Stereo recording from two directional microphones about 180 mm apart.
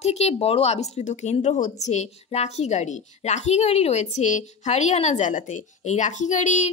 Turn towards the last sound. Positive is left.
turn(degrees=40)  # may be behind; listen again after turning